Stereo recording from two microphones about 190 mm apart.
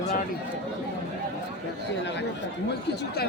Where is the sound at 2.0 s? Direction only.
65° left (ahead or behind).